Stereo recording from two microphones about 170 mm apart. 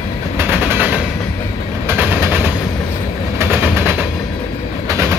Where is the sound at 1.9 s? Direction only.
10° right (ahead or behind).